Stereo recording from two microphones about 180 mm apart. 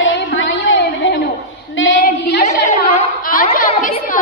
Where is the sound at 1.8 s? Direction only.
80° left.